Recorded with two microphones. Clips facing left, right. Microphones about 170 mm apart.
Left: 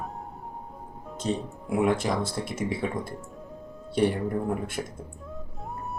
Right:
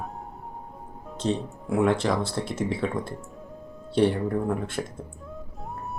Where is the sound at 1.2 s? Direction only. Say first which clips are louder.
Right 2 dB; 10° left (ahead or behind).